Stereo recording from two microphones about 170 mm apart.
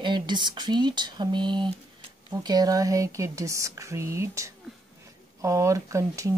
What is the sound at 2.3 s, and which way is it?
Speech, 25° right (ahead or behind).